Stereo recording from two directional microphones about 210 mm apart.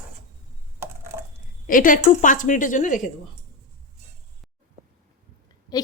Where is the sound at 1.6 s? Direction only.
40° left (ahead or behind).